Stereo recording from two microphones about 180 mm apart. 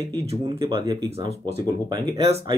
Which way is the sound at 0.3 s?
30° right (ahead or behind).